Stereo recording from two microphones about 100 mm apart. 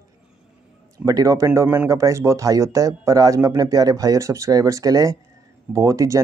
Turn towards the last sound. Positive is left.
turn(degrees=-30)  # may be behind; listen again after turning